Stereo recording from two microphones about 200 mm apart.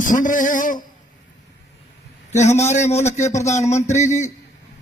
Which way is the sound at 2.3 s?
35° left (ahead or behind).